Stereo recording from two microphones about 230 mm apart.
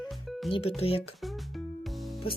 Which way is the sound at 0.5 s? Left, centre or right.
Left.